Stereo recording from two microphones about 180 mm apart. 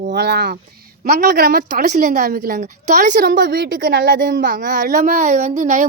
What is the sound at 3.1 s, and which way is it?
A child's voice, 55° right (ahead or behind).